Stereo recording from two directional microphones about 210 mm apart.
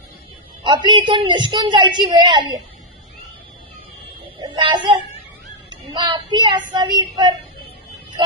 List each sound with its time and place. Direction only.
0.6 s a man's voice: 20° right (ahead or behind)
4.4 s a sound: 20° right (ahead or behind)
5.7 s a man's voice: 20° right (ahead or behind)